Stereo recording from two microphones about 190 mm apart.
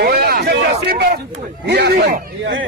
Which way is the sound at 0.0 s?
55° right (ahead or behind).